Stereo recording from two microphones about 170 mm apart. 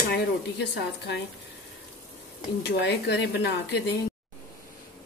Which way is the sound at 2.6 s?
80° left.